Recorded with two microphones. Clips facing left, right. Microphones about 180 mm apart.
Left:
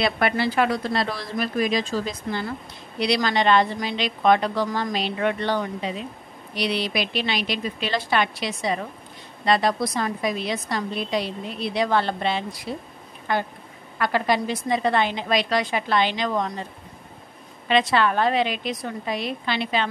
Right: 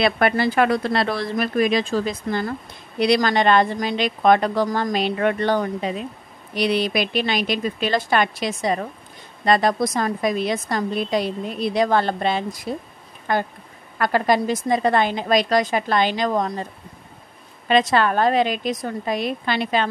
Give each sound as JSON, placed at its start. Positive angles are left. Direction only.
{"t": 0.0, "sound": "a woman's voice", "side_deg": -50}
{"t": 17.6, "sound": "a woman's voice", "side_deg": -45}